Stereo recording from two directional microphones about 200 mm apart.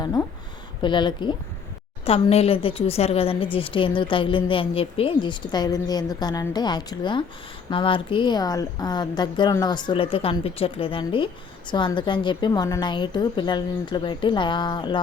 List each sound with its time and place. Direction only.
0.0 s speech: 20° left (ahead or behind)